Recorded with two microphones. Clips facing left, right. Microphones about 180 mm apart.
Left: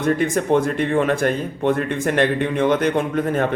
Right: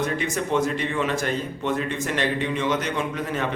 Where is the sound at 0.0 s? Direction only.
50° left (ahead or behind).